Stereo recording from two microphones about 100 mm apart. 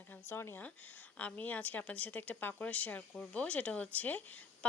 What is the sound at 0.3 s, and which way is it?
Speech, 25° left (ahead or behind).